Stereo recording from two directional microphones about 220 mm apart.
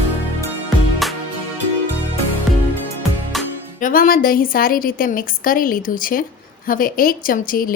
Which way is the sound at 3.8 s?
40° left (ahead or behind).